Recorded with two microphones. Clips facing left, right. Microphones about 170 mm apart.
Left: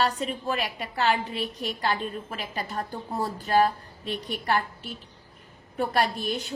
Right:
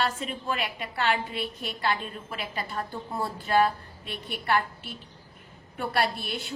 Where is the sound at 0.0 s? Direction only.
40° left (ahead or behind).